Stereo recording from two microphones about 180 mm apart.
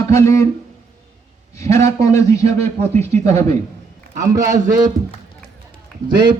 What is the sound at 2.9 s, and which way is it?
Speech, 35° right (ahead or behind).